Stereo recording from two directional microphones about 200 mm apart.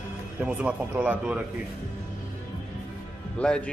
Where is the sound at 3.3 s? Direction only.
5° left (ahead or behind).